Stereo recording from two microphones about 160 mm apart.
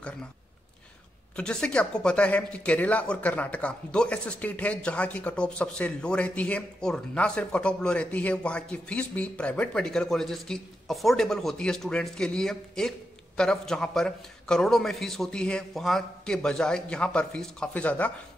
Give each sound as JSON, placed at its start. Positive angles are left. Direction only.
{"t": 1.3, "sound": "a man's voice", "side_deg": 5}